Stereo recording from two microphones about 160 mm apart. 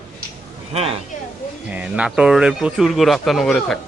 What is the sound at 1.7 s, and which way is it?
Speech, 10° right (ahead or behind).